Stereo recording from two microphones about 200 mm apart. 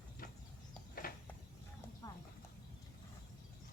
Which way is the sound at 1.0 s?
45° left (ahead or behind).